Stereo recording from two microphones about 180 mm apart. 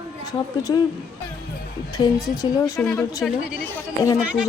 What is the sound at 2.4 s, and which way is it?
Speech, 20° left (ahead or behind).